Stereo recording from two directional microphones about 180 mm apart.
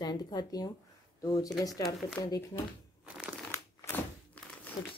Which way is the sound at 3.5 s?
15° left (ahead or behind).